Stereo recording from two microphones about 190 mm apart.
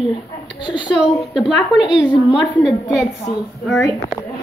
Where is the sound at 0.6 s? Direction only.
25° left (ahead or behind).